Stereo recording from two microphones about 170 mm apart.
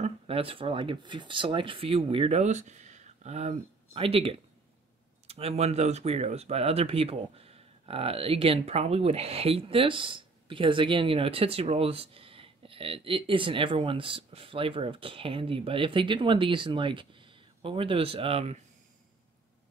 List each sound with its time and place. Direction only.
0.0 s speech: 35° right (ahead or behind)